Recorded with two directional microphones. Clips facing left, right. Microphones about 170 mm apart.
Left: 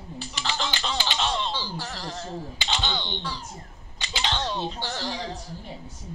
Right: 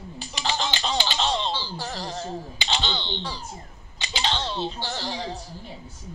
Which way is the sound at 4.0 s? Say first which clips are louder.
Right 1 dB; 15° right (ahead or behind).